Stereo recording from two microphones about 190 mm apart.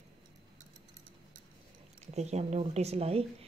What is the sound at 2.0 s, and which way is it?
Speech, 35° right (ahead or behind).